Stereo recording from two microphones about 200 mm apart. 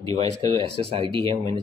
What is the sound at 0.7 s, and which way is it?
Speech, 30° right (ahead or behind).